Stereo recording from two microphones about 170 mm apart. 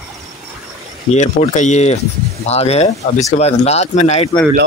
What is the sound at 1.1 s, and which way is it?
Speech, 45° left (ahead or behind).